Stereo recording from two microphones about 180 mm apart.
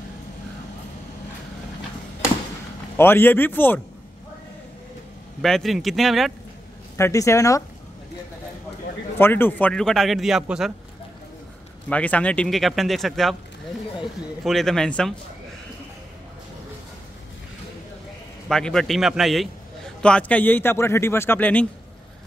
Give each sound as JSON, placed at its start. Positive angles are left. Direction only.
{"t": 3.0, "sound": "a man's voice", "side_deg": 10}
{"t": 5.4, "sound": "speech", "side_deg": 0}
{"t": 7.0, "sound": "a man's voice", "side_deg": 15}
{"t": 9.2, "sound": "speech", "side_deg": 10}
{"t": 11.9, "sound": "speech", "side_deg": 10}
{"t": 14.4, "sound": "speech", "side_deg": 0}
{"t": 18.5, "sound": "a man's voice", "side_deg": 5}